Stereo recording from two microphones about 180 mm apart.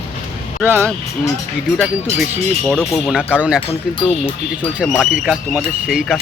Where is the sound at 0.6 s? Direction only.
10° right (ahead or behind).